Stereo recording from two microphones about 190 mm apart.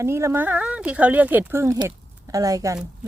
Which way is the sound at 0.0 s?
15° right (ahead or behind).